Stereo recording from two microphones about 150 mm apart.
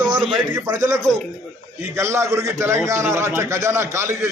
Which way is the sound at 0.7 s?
25° right (ahead or behind).